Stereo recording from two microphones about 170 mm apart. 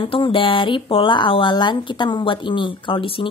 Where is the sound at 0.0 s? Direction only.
30° left (ahead or behind).